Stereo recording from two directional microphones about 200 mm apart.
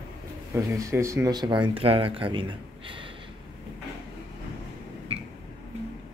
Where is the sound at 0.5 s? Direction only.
15° right (ahead or behind).